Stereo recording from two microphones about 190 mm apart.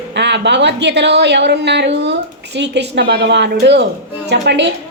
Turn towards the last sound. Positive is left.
turn(degrees=-65)  # may be behind; listen again after turning